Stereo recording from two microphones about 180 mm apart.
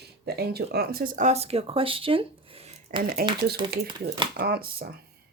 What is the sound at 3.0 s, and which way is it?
Speech, 55° right (ahead or behind).